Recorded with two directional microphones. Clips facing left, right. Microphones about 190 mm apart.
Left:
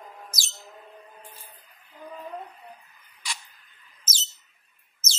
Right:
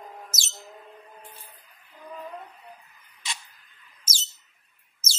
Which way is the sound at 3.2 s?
25° right (ahead or behind).